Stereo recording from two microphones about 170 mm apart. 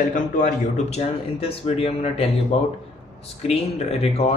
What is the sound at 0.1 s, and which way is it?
A man's voice, 45° left (ahead or behind).